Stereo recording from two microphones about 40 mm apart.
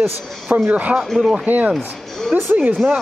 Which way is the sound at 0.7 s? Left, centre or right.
Right.